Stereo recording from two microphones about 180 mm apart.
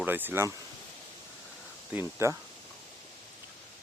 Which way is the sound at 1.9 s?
15° right (ahead or behind).